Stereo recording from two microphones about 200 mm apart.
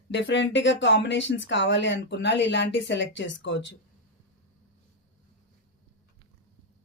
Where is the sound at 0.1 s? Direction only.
65° left (ahead or behind).